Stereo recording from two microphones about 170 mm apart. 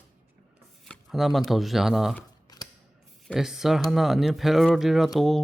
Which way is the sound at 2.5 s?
25° left (ahead or behind).